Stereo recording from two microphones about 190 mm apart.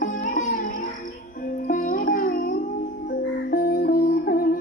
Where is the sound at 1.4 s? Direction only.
45° left (ahead or behind).